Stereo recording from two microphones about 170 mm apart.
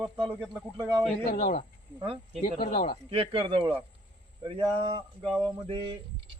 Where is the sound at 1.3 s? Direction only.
60° left (ahead or behind).